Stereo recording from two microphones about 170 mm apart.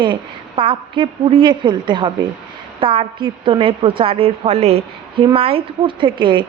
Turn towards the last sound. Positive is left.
turn(degrees=-30)  # may be behind; listen again after turning